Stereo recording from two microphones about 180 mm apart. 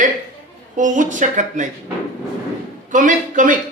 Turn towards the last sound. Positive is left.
turn(degrees=-45)  # may be behind; listen again after turning